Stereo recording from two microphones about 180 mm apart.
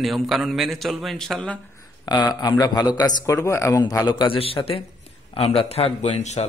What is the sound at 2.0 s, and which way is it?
A man's voice, 25° left (ahead or behind).